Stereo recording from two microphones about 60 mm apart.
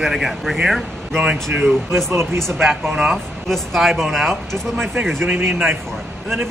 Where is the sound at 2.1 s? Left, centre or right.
Right.